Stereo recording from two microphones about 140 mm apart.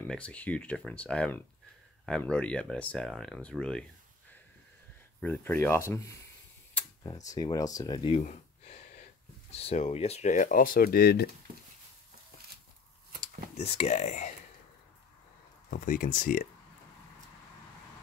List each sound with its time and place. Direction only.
0.0 s speech: 10° left (ahead or behind)
5.2 s speech: 15° left (ahead or behind); by 8.2 s 35° left (ahead or behind)
9.5 s speech: 45° left (ahead or behind); by 11.1 s 90° left
13.6 s speech: 50° left (ahead or behind)
15.7 s speech: 75° left (ahead or behind)